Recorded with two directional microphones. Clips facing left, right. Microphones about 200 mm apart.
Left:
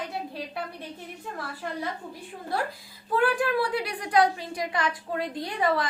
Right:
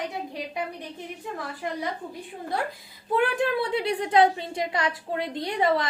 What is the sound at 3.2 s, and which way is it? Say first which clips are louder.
A woman's voice: even; 25° right (ahead or behind).